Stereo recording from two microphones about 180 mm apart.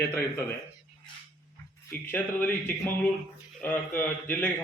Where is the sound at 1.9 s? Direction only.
10° left (ahead or behind).